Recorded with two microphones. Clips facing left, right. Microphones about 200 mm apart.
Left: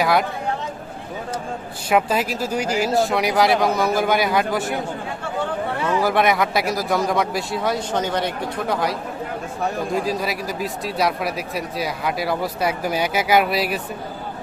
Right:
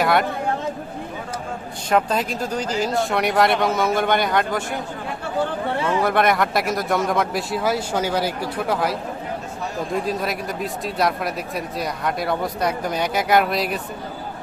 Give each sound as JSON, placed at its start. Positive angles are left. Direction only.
{"t": 0.0, "sound": "speech", "side_deg": 0}
{"t": 1.9, "sound": "speech", "side_deg": 5}
{"t": 6.0, "sound": "speech", "side_deg": 0}